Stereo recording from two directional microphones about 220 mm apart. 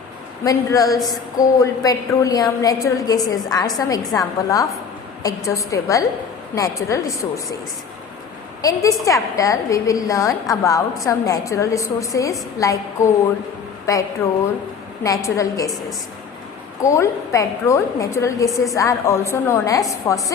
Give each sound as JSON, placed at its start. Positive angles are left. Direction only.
{"t": 0.4, "sound": "a woman's voice", "side_deg": 15}
{"t": 8.6, "sound": "a woman's voice", "side_deg": 15}
{"t": 13.9, "sound": "a woman's voice", "side_deg": 15}
{"t": 16.8, "sound": "a woman's voice", "side_deg": 15}